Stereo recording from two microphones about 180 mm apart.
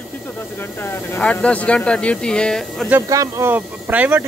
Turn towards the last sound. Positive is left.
turn(degrees=-10)  # may be behind; listen again after turning